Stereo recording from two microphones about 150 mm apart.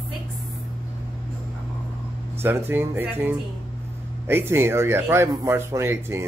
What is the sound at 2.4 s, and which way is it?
Speech, 15° right (ahead or behind).